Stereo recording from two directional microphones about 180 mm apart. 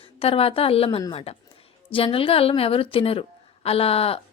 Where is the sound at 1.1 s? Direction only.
35° left (ahead or behind).